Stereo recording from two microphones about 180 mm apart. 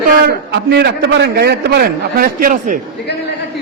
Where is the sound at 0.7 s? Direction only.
70° right (ahead or behind); by 2.8 s 50° right (ahead or behind).